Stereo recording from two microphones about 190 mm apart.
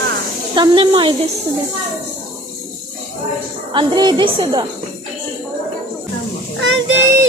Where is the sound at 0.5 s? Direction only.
25° right (ahead or behind).